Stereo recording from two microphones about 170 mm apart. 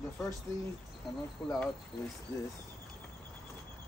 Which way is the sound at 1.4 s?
20° left (ahead or behind).